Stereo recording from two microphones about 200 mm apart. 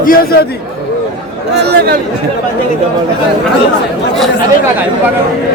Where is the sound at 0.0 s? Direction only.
45° left (ahead or behind).